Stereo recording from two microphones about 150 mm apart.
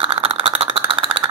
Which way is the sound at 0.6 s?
35° right (ahead or behind).